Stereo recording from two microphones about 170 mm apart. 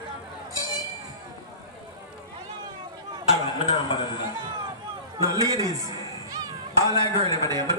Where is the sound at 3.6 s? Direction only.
25° left (ahead or behind).